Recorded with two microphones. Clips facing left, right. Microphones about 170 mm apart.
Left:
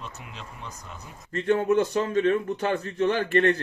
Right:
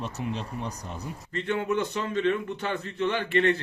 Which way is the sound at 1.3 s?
45° left (ahead or behind).